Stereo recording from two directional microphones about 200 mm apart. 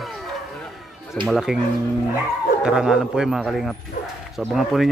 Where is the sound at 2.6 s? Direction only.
5° right (ahead or behind).